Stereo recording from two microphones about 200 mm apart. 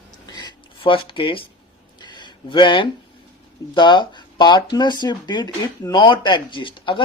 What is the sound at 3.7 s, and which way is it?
Speech, 20° left (ahead or behind).